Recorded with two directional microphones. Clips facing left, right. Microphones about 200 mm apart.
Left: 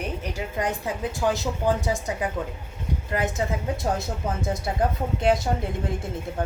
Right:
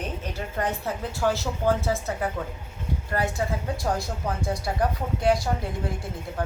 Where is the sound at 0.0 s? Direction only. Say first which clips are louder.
Left 2 dB; 10° left (ahead or behind).